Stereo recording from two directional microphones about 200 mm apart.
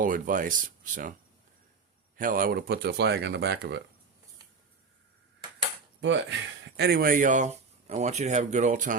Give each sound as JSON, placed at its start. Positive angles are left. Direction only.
{"t": 0.0, "sound": "speech", "side_deg": -40}
{"t": 2.1, "sound": "speech", "side_deg": -45}
{"t": 6.0, "sound": "speech", "side_deg": -65}